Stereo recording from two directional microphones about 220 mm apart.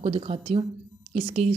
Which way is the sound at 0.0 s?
25° right (ahead or behind).